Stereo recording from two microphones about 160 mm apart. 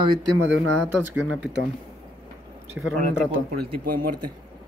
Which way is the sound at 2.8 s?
5° right (ahead or behind).